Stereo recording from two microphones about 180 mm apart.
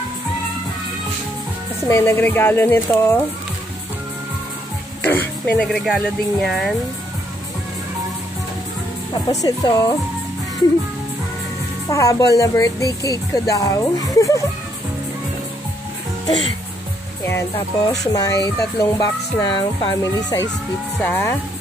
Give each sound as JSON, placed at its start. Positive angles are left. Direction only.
{"t": 1.9, "sound": "speech", "side_deg": 15}
{"t": 5.0, "sound": "speech", "side_deg": 10}
{"t": 9.3, "sound": "speech", "side_deg": 20}
{"t": 11.9, "sound": "speech", "side_deg": 20}
{"t": 17.8, "sound": "speech", "side_deg": 20}